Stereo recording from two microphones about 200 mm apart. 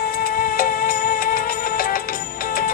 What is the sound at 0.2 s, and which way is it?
Music, 45° left (ahead or behind).